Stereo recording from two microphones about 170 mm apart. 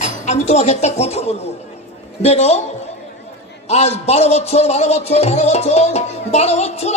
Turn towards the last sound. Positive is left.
turn(degrees=40)  # may be behind; listen again after turning